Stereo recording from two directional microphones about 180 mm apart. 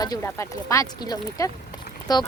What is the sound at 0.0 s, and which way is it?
Speech, 20° left (ahead or behind).